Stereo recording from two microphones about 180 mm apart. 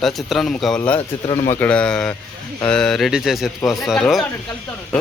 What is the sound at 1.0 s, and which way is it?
Speech, 25° left (ahead or behind).